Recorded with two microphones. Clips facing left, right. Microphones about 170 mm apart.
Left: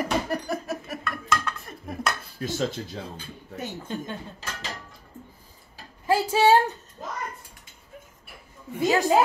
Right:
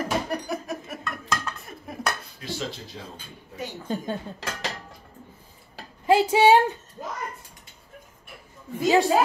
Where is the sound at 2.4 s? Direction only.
45° left (ahead or behind).